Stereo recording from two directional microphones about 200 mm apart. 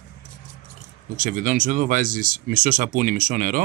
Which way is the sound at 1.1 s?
40° right (ahead or behind).